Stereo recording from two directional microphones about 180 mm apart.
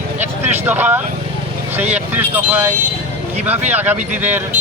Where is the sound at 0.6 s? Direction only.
10° right (ahead or behind).